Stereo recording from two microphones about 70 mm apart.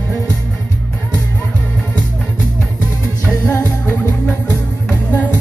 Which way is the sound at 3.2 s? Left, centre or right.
Left.